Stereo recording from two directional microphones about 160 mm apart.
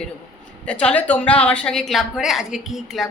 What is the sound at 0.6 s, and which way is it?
A woman's voice, 5° left (ahead or behind).